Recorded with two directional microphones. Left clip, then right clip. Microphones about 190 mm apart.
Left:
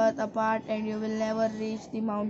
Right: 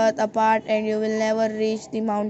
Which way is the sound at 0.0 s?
20° right (ahead or behind).